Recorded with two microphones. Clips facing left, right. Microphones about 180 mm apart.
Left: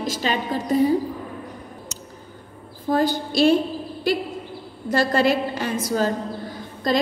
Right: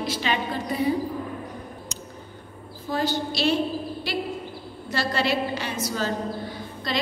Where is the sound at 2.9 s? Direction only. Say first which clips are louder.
Left 5 dB; 50° left (ahead or behind).